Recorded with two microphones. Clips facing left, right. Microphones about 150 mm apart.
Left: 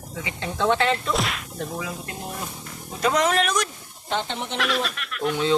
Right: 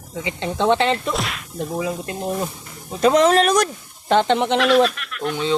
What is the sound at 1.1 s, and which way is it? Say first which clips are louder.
Speech: even; centre (ahead or behind).